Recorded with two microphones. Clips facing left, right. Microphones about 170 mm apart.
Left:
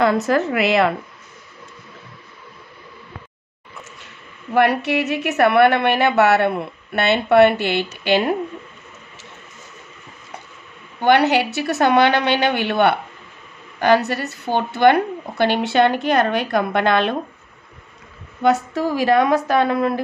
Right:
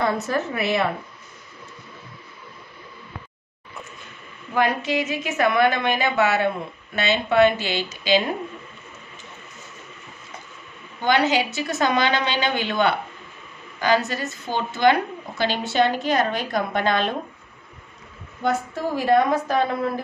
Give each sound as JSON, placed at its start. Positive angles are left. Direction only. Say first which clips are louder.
{"t": 0.0, "sound": "a woman's voice", "louder": "left 6 dB", "side_deg": 90}
{"t": 4.6, "sound": "a woman's voice", "louder": "left 5 dB", "side_deg": 65}
{"t": 11.0, "sound": "a woman's voice", "louder": "left 5 dB", "side_deg": 60}
{"t": 18.4, "sound": "a woman's voice", "louder": "left 6 dB", "side_deg": 75}